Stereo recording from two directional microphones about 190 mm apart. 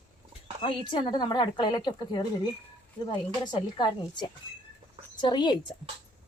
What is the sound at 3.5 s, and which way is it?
Speech, 25° left (ahead or behind).